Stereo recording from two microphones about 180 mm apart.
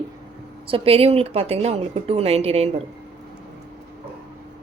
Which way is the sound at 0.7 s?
30° right (ahead or behind).